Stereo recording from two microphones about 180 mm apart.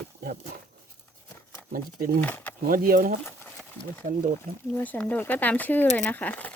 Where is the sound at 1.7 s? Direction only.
50° right (ahead or behind).